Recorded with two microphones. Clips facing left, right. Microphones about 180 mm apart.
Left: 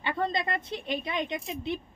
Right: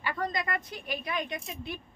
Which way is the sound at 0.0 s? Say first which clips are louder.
Left 3 dB; 25° left (ahead or behind).